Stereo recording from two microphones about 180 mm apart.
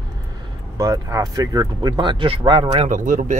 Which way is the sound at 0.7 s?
20° right (ahead or behind).